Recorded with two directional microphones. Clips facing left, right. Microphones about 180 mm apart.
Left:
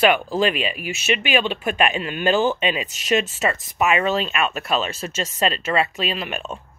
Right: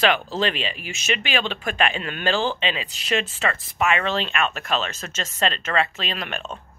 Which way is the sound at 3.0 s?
40° left (ahead or behind).